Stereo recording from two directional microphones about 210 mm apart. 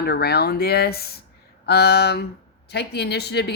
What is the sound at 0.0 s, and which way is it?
Speech, 50° left (ahead or behind).